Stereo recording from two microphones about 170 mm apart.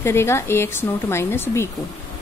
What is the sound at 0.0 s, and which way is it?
Speech, 15° left (ahead or behind).